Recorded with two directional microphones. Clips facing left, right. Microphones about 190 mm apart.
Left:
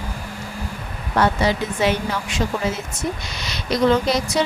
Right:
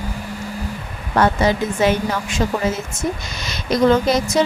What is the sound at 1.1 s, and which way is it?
A woman's voice, 50° right (ahead or behind).